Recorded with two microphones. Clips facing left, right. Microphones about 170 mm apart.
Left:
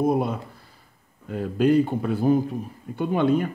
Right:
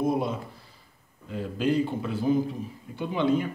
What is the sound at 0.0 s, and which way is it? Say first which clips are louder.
A man's voice: left 4 dB; 55° left (ahead or behind).